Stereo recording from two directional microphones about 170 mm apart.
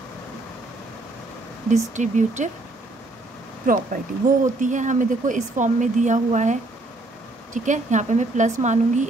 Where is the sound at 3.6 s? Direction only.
55° right (ahead or behind).